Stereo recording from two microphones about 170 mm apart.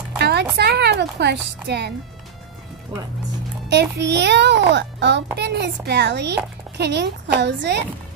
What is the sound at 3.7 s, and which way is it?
A child's voice, 85° right.